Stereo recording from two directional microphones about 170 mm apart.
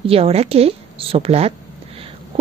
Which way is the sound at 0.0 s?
35° right (ahead or behind).